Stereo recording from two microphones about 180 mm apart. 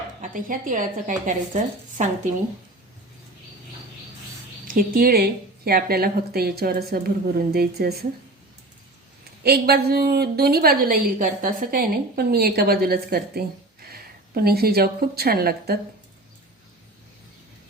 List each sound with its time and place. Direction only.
0.2 s a woman's voice: 50° right (ahead or behind)
4.6 s a woman's voice: 50° right (ahead or behind)
9.4 s a woman's voice: 65° right (ahead or behind)